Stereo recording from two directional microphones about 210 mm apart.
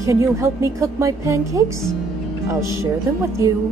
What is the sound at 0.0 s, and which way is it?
A woman's voice, 15° right (ahead or behind).